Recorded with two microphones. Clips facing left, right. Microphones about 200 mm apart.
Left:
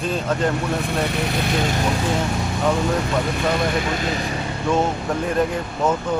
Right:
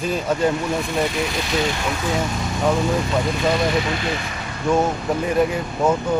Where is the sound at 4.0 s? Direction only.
35° left (ahead or behind).